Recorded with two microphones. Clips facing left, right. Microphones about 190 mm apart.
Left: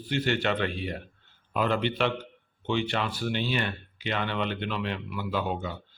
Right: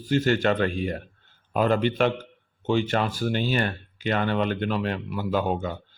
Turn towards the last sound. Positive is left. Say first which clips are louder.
# right 5 dB
turn(degrees=-45)  # may be behind; listen again after turning